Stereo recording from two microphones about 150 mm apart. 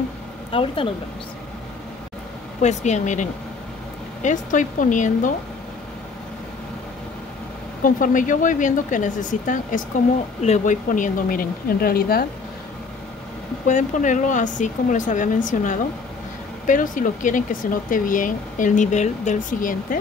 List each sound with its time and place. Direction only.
0.5 s speech: 35° left (ahead or behind)
2.6 s speech: 50° left (ahead or behind)
7.8 s speech: 60° left (ahead or behind); by 12.3 s 85° left
13.7 s speech: 55° left (ahead or behind)